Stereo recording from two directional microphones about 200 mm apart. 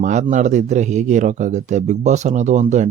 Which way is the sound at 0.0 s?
35° right (ahead or behind).